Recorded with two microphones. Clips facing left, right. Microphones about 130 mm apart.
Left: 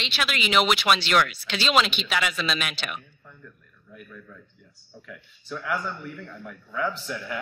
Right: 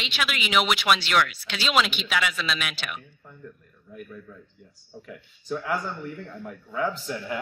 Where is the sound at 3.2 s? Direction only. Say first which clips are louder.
Right 4 dB; 20° right (ahead or behind).